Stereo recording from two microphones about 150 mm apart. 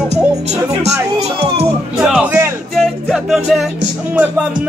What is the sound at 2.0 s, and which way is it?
Music, 5° right (ahead or behind).